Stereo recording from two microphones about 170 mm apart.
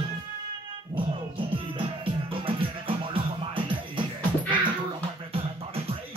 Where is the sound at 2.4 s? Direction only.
30° right (ahead or behind).